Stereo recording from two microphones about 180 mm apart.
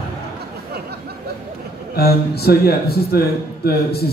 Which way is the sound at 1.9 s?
60° left (ahead or behind).